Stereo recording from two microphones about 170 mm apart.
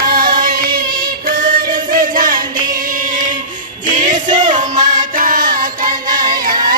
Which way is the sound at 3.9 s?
50° right (ahead or behind).